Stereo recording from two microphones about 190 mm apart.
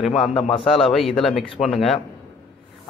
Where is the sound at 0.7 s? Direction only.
Centre (ahead or behind).